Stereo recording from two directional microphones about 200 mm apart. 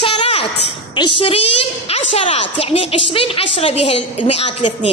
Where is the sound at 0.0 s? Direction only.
25° left (ahead or behind).